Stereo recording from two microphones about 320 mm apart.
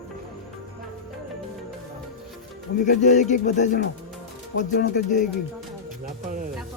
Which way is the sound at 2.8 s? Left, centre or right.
Left.